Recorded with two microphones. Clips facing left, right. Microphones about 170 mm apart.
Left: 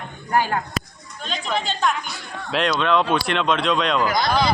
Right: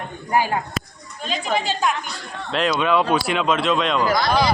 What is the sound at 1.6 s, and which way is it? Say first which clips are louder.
Speech: right 1 dB; 5° right (ahead or behind).